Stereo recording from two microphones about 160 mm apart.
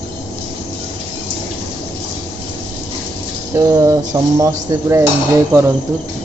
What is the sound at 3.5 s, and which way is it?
Speech, 20° right (ahead or behind).